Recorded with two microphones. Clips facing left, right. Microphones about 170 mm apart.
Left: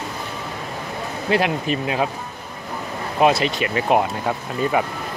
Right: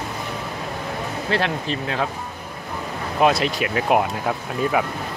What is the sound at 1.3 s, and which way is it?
Speech, 10° left (ahead or behind).